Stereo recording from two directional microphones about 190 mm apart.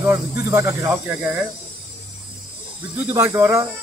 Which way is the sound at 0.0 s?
15° right (ahead or behind).